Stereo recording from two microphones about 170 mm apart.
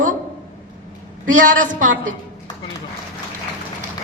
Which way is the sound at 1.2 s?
50° right (ahead or behind).